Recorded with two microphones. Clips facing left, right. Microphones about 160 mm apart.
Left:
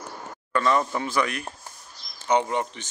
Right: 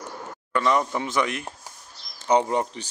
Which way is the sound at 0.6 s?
15° right (ahead or behind).